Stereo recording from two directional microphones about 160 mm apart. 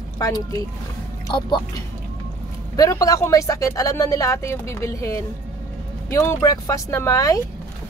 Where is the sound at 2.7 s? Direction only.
20° left (ahead or behind).